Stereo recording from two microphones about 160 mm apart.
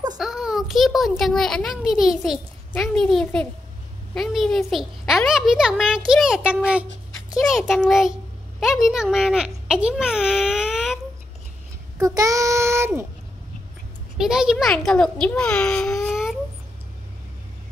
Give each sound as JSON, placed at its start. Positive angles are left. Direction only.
{"t": 0.2, "sound": "a child's voice", "side_deg": -5}
{"t": 12.0, "sound": "child singing", "side_deg": -20}
{"t": 14.1, "sound": "a child's voice", "side_deg": -5}